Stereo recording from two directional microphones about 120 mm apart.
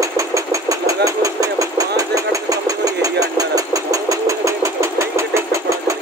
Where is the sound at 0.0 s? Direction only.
25° right (ahead or behind).